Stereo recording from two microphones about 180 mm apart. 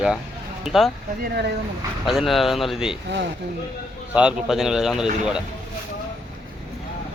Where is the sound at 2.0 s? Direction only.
Centre (ahead or behind).